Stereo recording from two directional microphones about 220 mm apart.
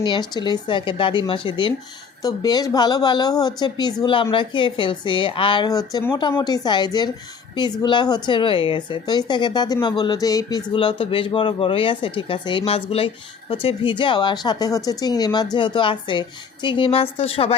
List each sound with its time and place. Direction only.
0.0 s a woman's voice: 20° left (ahead or behind)